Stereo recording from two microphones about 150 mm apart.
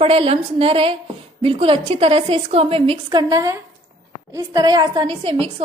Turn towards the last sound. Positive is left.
turn(degrees=-40)  # may be behind; listen again after turning